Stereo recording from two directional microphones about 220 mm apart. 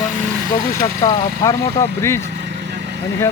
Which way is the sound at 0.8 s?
15° left (ahead or behind).